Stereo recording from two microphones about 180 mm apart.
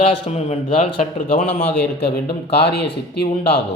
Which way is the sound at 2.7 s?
65° left (ahead or behind).